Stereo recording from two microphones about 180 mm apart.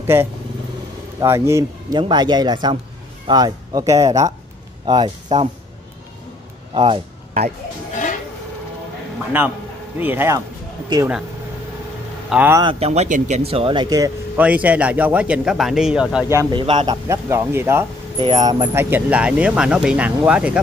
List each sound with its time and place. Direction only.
0.0 s a man's voice: 15° right (ahead or behind)
6.7 s speech: 30° right (ahead or behind)
9.3 s speech: 10° right (ahead or behind)
12.3 s speech: 10° right (ahead or behind)
12.6 s speech: 35° right (ahead or behind)
14.3 s speech: 10° right (ahead or behind)
16.3 s speech: 25° right (ahead or behind); by 20.5 s 5° right (ahead or behind)